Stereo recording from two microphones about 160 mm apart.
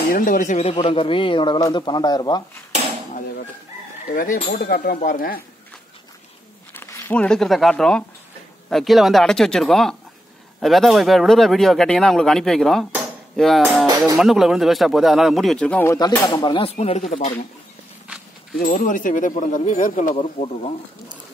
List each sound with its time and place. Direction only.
0.1 s speech: 55° left (ahead or behind)
0.7 s a man's voice: 35° left (ahead or behind)
4.1 s speech: 60° left (ahead or behind)
6.7 s speech: 15° left (ahead or behind)
15.8 s speech: 15° left (ahead or behind)
16.3 s speech: 30° left (ahead or behind); by 17.3 s 45° left (ahead or behind)
18.0 s walk: 5° right (ahead or behind)
18.6 s speech: 55° left (ahead or behind); by 20.7 s 40° left (ahead or behind)